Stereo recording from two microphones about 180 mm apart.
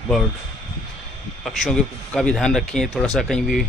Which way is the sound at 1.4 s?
Centre (ahead or behind).